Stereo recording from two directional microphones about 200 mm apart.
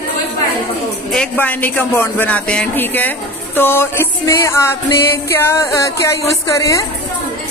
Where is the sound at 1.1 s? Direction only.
5° left (ahead or behind).